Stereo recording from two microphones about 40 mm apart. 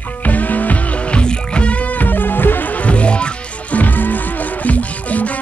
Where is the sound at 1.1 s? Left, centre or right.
Left.